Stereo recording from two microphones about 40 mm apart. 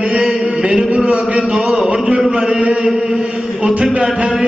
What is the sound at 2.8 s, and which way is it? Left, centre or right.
Chant, centre.